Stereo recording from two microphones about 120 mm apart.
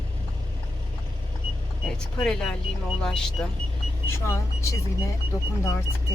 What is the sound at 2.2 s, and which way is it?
Speech, 5° left (ahead or behind).